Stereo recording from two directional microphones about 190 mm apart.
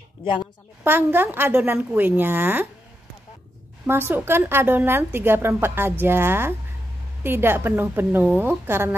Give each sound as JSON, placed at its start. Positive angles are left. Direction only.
{"t": 0.2, "sound": "a woman's voice", "side_deg": 25}
{"t": 0.8, "sound": "a woman's voice", "side_deg": -10}
{"t": 3.8, "sound": "a woman's voice", "side_deg": -10}